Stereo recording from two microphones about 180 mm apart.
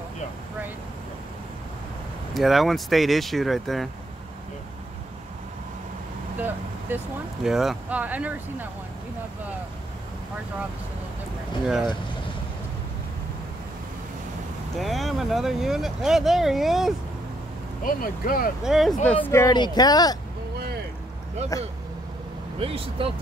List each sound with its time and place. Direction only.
2.3 s speech: centre (ahead or behind)
7.4 s speech: 5° right (ahead or behind)
11.6 s speech: centre (ahead or behind)
14.8 s speech: centre (ahead or behind)
17.8 s speech: 55° left (ahead or behind)
18.6 s speech: centre (ahead or behind)
19.2 s speech: 15° left (ahead or behind)
20.5 s vehicle: 60° right (ahead or behind)
21.5 s speech: 20° left (ahead or behind)
22.6 s speech: 30° right (ahead or behind)